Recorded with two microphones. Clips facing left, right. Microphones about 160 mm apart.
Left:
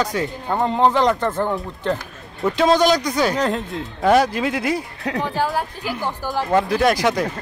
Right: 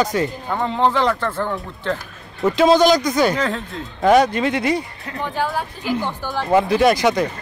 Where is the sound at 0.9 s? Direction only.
15° left (ahead or behind).